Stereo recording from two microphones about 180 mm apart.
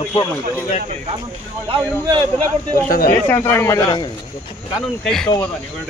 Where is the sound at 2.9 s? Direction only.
55° left (ahead or behind).